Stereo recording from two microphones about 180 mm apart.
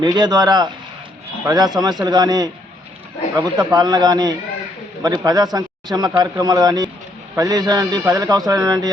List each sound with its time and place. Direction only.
0.0 s a man's voice: 25° right (ahead or behind)